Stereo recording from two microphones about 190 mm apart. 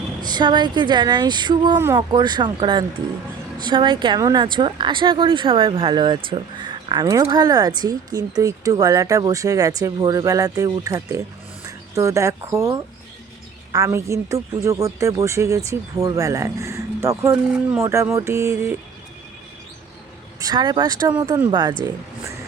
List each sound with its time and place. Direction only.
0.2 s speech: 20° right (ahead or behind)
20.4 s speech: 20° right (ahead or behind)